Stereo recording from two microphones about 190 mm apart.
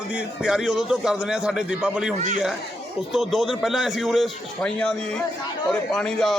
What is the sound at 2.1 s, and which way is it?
Speech, 40° right (ahead or behind).